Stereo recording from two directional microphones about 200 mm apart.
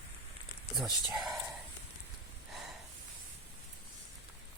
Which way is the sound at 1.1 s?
Centre (ahead or behind).